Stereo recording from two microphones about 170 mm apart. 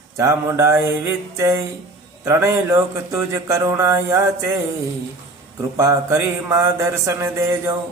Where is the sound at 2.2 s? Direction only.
15° right (ahead or behind).